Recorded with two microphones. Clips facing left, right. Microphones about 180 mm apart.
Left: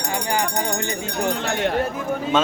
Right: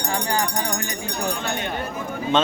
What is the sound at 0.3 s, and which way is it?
Speech, 20° left (ahead or behind).